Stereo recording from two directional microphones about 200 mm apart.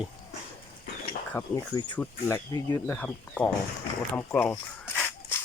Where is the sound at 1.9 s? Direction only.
10° left (ahead or behind).